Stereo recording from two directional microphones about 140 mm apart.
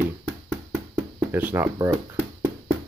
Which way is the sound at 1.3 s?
10° right (ahead or behind).